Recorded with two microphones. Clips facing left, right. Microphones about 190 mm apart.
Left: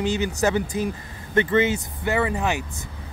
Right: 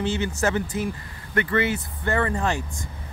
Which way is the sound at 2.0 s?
10° left (ahead or behind).